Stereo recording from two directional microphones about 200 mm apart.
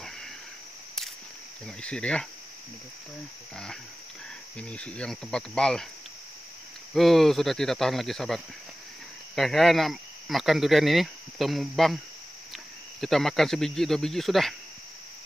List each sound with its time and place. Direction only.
1.8 s speech: 5° left (ahead or behind)
4.6 s speech: 5° left (ahead or behind)
6.9 s speech: centre (ahead or behind)
13.0 s speech: centre (ahead or behind)